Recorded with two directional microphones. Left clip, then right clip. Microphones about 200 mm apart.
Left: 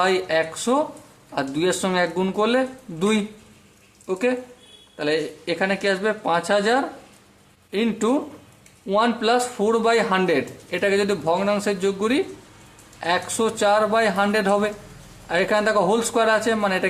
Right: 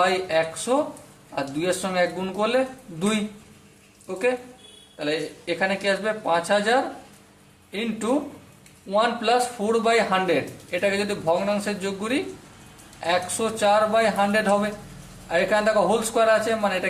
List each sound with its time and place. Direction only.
0.0 s speech: 40° left (ahead or behind)
4.0 s speech: 40° left (ahead or behind)